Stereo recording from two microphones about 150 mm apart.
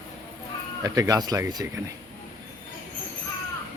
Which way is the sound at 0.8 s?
25° right (ahead or behind).